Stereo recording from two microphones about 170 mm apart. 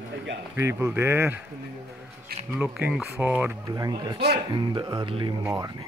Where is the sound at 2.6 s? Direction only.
10° right (ahead or behind).